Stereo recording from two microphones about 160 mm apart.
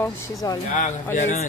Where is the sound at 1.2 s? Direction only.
50° left (ahead or behind).